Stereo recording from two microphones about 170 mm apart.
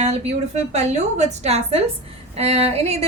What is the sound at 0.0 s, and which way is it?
A woman's voice, 40° right (ahead or behind).